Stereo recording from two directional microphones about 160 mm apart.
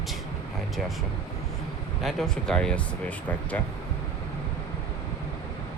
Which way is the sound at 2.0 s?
Centre (ahead or behind).